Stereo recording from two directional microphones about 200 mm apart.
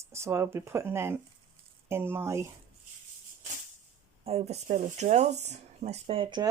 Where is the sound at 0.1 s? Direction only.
15° right (ahead or behind).